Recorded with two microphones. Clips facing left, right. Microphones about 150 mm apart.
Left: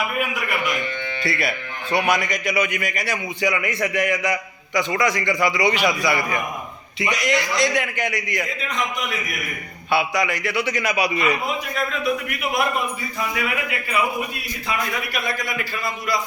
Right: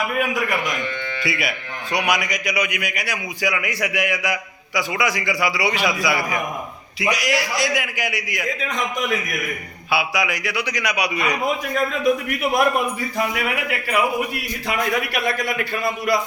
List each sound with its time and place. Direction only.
1.3 s a man's voice: 5° right (ahead or behind)
9.9 s a man's voice: 5° right (ahead or behind)
13.3 s a man's voice: 75° right (ahead or behind)